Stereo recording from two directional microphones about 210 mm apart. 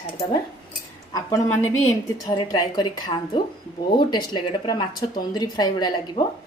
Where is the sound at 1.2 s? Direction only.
15° left (ahead or behind).